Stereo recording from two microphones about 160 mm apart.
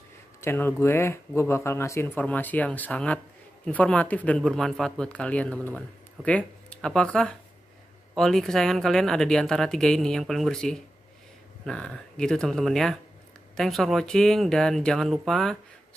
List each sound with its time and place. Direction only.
0.4 s speech: 15° left (ahead or behind)